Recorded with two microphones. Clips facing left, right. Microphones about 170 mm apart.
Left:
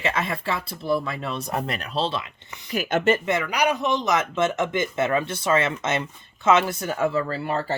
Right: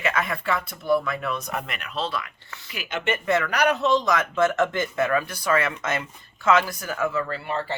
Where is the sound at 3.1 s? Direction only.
20° left (ahead or behind).